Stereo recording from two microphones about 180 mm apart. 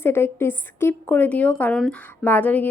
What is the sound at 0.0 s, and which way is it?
A woman's voice, 15° left (ahead or behind).